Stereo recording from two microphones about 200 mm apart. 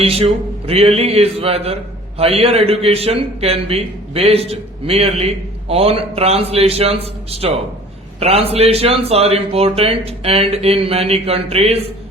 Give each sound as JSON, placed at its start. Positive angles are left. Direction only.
{"t": 0.0, "sound": "a man's voice", "side_deg": -30}